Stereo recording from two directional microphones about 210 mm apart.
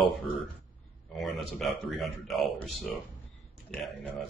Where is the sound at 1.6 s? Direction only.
Centre (ahead or behind).